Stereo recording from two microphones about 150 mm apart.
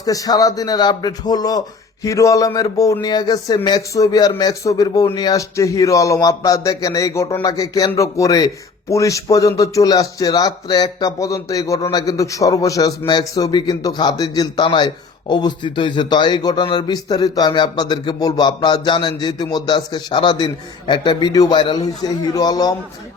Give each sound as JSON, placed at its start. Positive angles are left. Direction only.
{"t": 0.0, "sound": "a man's voice", "side_deg": 25}